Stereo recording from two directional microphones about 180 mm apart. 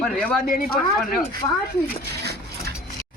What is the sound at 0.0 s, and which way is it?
Speech, centre (ahead or behind).